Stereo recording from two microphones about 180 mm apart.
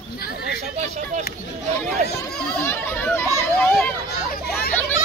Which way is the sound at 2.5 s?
15° left (ahead or behind).